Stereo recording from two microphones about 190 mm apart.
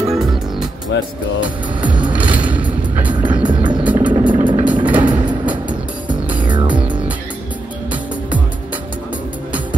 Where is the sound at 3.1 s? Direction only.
25° right (ahead or behind).